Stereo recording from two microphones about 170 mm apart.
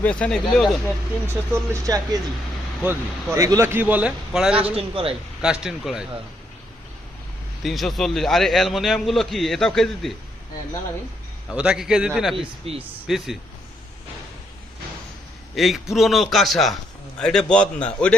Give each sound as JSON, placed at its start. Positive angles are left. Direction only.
{"t": 0.0, "sound": "a man's voice", "side_deg": 5}
{"t": 1.3, "sound": "speech", "side_deg": -15}
{"t": 3.3, "sound": "a man's voice", "side_deg": -15}
{"t": 4.7, "sound": "a man's voice", "side_deg": -35}
{"t": 5.4, "sound": "a man's voice", "side_deg": -5}
{"t": 7.6, "sound": "a man's voice", "side_deg": 0}
{"t": 11.5, "sound": "a man's voice", "side_deg": -5}
{"t": 12.4, "sound": "a man's voice", "side_deg": -35}
{"t": 13.1, "sound": "a man's voice", "side_deg": 0}
{"t": 15.5, "sound": "a man's voice", "side_deg": 0}